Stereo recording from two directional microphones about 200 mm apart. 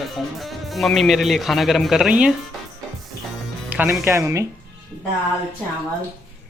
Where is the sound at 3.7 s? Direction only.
10° right (ahead or behind).